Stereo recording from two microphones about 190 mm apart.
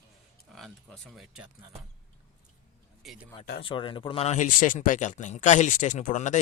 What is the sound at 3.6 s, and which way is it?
Speech, 25° left (ahead or behind).